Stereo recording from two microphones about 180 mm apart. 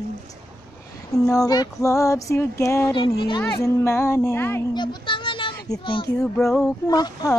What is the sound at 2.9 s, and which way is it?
Speech, 25° left (ahead or behind).